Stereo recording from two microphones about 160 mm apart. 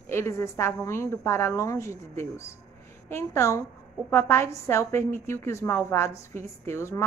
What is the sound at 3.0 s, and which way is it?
A woman's voice, 15° left (ahead or behind).